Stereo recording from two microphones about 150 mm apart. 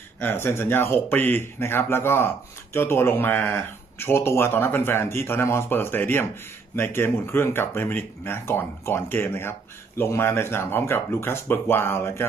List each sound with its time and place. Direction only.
0.2 s speech: 15° left (ahead or behind)